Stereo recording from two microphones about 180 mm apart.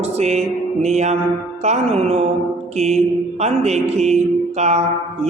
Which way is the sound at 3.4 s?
35° right (ahead or behind).